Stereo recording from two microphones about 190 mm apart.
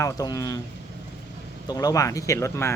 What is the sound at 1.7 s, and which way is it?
Speech, 20° left (ahead or behind).